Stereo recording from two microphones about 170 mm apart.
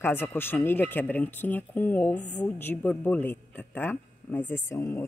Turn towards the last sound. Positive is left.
turn(degrees=15)  # may be behind; listen again after turning